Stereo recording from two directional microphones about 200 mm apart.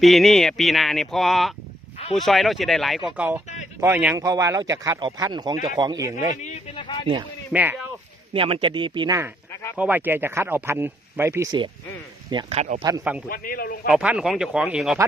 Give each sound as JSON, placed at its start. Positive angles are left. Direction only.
{"t": 0.0, "sound": "speech", "side_deg": 0}
{"t": 3.2, "sound": "a man's voice", "side_deg": -10}
{"t": 6.3, "sound": "speech", "side_deg": 35}
{"t": 6.7, "sound": "speech", "side_deg": 25}
{"t": 7.5, "sound": "speech", "side_deg": -10}
{"t": 8.3, "sound": "a man's voice", "side_deg": -25}
{"t": 12.5, "sound": "speech", "side_deg": -40}
{"t": 12.8, "sound": "speech", "side_deg": -15}
{"t": 13.2, "sound": "a man's voice", "side_deg": 45}
{"t": 13.8, "sound": "speech", "side_deg": -5}